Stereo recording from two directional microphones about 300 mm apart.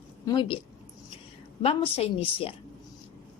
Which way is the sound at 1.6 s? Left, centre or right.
Centre.